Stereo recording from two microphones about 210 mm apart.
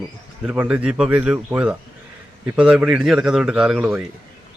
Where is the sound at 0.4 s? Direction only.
5° right (ahead or behind).